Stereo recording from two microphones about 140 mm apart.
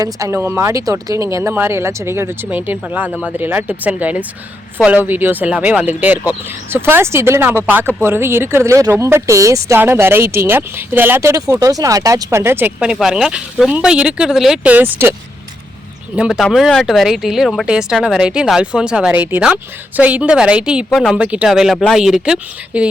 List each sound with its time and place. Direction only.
0.0 s speech: 20° right (ahead or behind)
16.1 s speech: 5° right (ahead or behind)